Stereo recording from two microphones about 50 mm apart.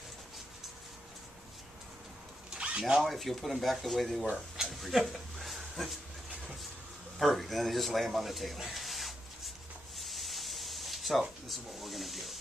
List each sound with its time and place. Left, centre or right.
2.5 s a sound: right
3.0 s speech: centre
4.6 s dog: centre
7.2 s speech: centre
9.9 s spray: centre